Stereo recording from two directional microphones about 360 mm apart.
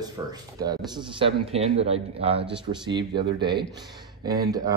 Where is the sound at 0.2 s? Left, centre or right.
Centre.